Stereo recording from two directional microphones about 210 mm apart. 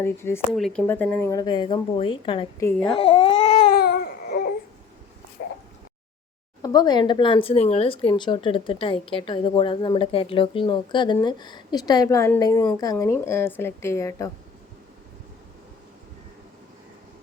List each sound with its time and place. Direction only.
0.0 s speech: 10° left (ahead or behind)
2.6 s speech: 5° left (ahead or behind)
2.9 s speech: 25° left (ahead or behind)
3.7 s baby cry: 50° left (ahead or behind)
6.6 s speech: 20° left (ahead or behind)